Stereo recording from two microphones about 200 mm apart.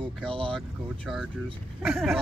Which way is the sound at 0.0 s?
25° right (ahead or behind).